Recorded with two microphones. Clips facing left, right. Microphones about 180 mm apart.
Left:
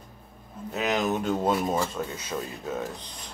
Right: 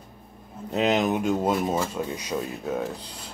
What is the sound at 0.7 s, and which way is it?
Speech, 25° right (ahead or behind).